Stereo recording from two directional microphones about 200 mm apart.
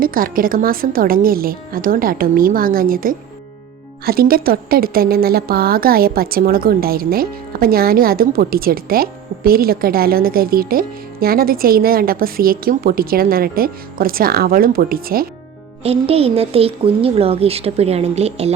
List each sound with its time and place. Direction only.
0.0 s a woman's voice: 45° right (ahead or behind)
15.8 s speech: 30° right (ahead or behind)